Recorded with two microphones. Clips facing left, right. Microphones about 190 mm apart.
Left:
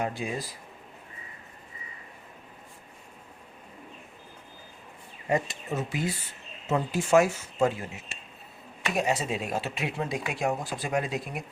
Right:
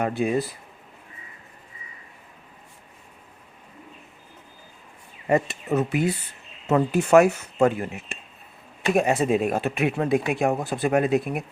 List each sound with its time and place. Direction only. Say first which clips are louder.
0.0 s speech: right 8 dB; 60° right (ahead or behind)
5.3 s speech: right 6 dB; 60° right (ahead or behind)